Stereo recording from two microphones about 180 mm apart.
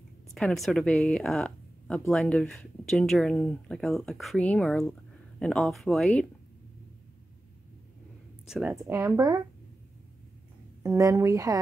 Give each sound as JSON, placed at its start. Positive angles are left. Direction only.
{"t": 0.3, "sound": "speech", "side_deg": 0}
{"t": 8.5, "sound": "speech", "side_deg": -5}
{"t": 8.8, "sound": "speech", "side_deg": -15}
{"t": 10.8, "sound": "speech", "side_deg": -20}